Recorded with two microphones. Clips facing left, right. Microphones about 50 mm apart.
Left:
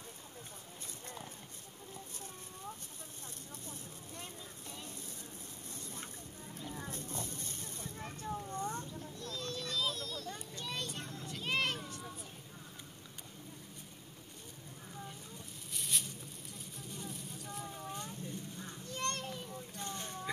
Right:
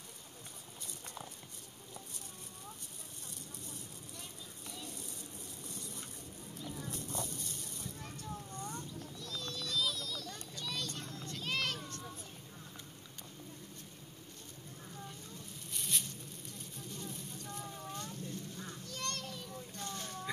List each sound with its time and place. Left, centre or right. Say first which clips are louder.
4.2 s vehicle: left 2 dB; left
6.6 s vehicle: even; left
8.5 s a sound: left 5 dB; left
10.3 s children playing: even; left
11.0 s child singing: left 1 dB; left
11.2 s children playing: left 1 dB; centre
11.5 s a sound: left 3 dB; left
11.8 s a sound: even; centre
14.9 s a sound: left 1 dB; centre
16.5 s vehicle: even; centre
17.9 s rain: even; centre
18.9 s children playing: left 4 dB; left
19.8 s boat: even; left